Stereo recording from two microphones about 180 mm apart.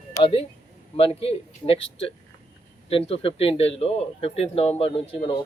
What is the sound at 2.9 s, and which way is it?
Speech, 30° left (ahead or behind).